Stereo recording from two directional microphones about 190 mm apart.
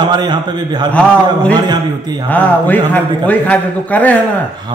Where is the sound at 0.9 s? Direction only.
5° left (ahead or behind).